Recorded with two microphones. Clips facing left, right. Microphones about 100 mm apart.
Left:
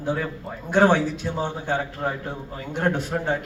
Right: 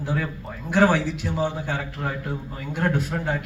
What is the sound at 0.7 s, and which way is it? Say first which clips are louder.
A man's voice: left 1 dB; 25° left (ahead or behind).